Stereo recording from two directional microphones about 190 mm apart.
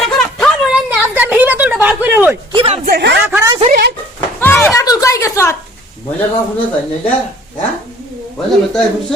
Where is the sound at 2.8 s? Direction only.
55° right (ahead or behind).